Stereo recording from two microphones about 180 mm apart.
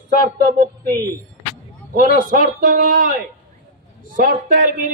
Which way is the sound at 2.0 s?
55° right (ahead or behind).